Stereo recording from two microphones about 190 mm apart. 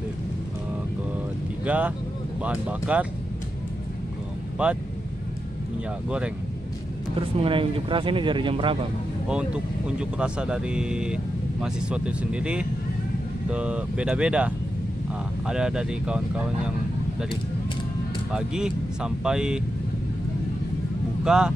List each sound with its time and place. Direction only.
1.7 s speech: 5° right (ahead or behind)
4.6 s speech: 5° right (ahead or behind)
6.0 s speech: 5° right (ahead or behind)
7.2 s speech: 30° right (ahead or behind)
9.3 s speech: 5° right (ahead or behind)
18.3 s speech: 5° right (ahead or behind)
21.2 s speech: 5° right (ahead or behind)